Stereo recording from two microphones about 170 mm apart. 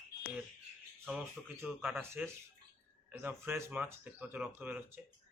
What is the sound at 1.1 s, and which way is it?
Speech, 10° right (ahead or behind).